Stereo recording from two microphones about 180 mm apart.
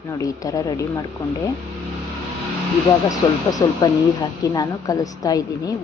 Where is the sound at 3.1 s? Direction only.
20° left (ahead or behind).